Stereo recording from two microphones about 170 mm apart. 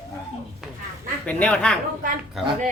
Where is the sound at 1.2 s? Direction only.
5° left (ahead or behind).